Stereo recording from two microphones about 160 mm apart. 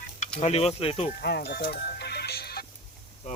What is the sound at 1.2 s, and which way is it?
Music, 90° left.